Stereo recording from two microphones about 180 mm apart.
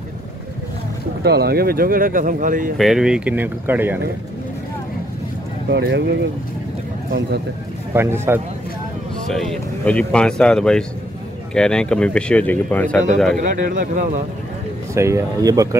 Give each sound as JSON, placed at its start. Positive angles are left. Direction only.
{"t": 1.2, "sound": "speech", "side_deg": -60}
{"t": 2.8, "sound": "speech", "side_deg": -5}
{"t": 5.7, "sound": "speech", "side_deg": -70}
{"t": 7.9, "sound": "speech", "side_deg": -15}
{"t": 9.3, "sound": "speech", "side_deg": 0}
{"t": 13.4, "sound": "speech", "side_deg": -45}
{"t": 15.0, "sound": "speech", "side_deg": -15}